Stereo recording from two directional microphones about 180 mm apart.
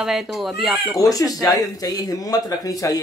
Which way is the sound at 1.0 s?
20° left (ahead or behind).